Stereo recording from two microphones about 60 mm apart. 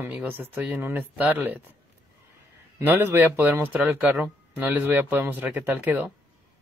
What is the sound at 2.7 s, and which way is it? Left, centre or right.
Speech, right.